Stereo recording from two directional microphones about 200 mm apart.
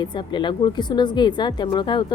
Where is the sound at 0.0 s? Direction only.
25° left (ahead or behind).